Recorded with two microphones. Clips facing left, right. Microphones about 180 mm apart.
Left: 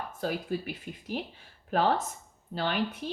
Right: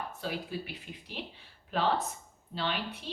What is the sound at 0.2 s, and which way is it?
A woman's voice, 45° left (ahead or behind).